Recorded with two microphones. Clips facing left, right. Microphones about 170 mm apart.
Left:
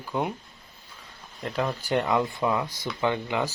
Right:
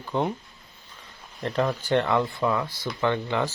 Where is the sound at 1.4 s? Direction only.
5° left (ahead or behind).